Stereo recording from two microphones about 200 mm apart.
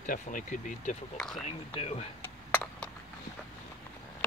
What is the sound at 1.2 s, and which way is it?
Speech, centre (ahead or behind).